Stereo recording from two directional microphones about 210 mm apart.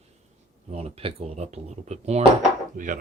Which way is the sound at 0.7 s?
30° right (ahead or behind).